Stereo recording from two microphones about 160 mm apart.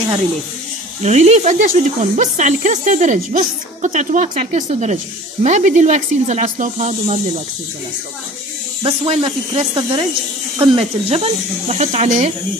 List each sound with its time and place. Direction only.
1.0 s speech: 45° right (ahead or behind)
8.8 s speech: 35° right (ahead or behind)